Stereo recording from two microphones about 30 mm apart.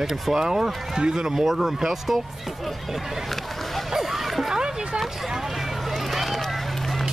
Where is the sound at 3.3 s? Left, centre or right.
Centre.